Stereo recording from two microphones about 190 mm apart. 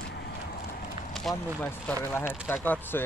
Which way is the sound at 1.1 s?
5° left (ahead or behind).